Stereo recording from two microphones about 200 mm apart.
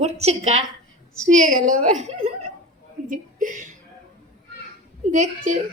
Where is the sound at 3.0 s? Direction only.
40° right (ahead or behind).